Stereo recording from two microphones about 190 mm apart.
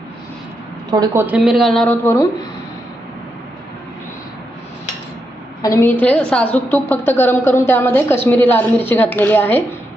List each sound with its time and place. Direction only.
0.9 s a woman's voice: 20° right (ahead or behind)
1.4 s speech: centre (ahead or behind)
5.6 s a woman's voice: 15° left (ahead or behind)